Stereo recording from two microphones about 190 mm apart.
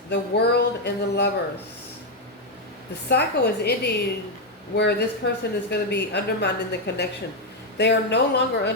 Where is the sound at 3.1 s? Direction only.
60° left (ahead or behind).